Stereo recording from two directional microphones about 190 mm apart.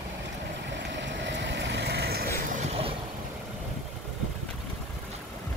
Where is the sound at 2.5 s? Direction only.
35° right (ahead or behind).